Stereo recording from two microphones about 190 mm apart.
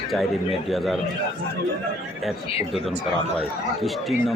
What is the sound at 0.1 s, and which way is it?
Speech, centre (ahead or behind).